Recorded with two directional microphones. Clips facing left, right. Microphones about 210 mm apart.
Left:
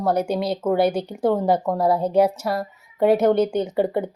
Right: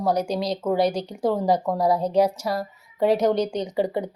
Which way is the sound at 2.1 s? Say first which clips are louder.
Left 2 dB; 5° left (ahead or behind).